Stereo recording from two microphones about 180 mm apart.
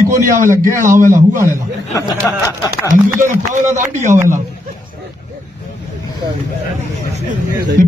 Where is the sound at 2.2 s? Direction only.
15° left (ahead or behind).